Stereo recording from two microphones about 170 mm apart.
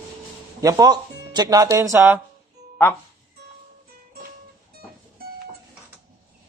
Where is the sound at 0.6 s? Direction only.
20° right (ahead or behind).